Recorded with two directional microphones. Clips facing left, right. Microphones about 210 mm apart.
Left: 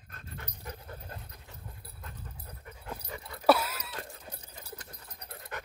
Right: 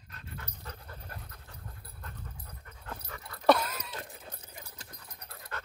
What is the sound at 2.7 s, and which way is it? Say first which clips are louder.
Dog: left 3 dB; 15° left (ahead or behind).